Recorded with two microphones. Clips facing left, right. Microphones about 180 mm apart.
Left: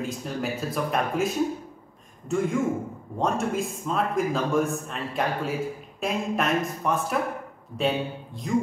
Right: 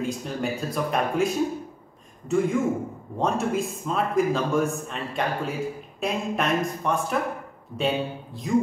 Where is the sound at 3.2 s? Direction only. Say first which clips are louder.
Right 1 dB; centre (ahead or behind).